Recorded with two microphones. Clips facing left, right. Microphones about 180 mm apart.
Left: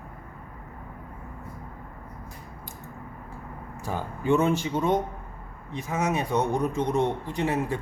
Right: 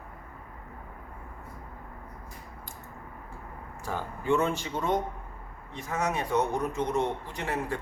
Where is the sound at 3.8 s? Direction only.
20° left (ahead or behind).